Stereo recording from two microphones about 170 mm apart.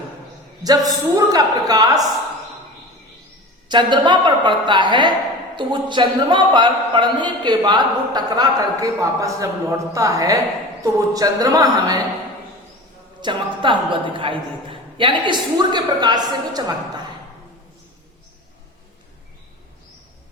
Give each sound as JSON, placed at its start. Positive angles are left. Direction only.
{"t": 0.6, "sound": "a man's voice", "side_deg": -20}
{"t": 3.7, "sound": "a man's voice", "side_deg": -25}
{"t": 13.2, "sound": "a man's voice", "side_deg": -30}